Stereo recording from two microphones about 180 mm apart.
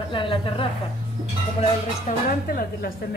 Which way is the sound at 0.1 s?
30° left (ahead or behind).